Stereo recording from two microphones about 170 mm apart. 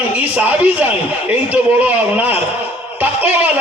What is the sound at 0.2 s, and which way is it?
A man's voice, 10° right (ahead or behind).